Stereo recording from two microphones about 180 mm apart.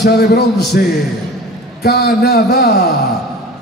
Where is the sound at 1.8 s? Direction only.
60° left (ahead or behind).